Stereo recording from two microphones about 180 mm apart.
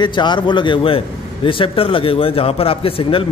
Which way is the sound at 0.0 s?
25° left (ahead or behind).